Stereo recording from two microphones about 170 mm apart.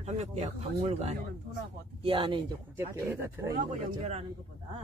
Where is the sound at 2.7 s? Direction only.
15° right (ahead or behind).